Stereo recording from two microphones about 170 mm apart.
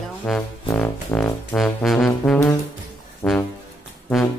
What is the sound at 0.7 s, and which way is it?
Music, 20° left (ahead or behind).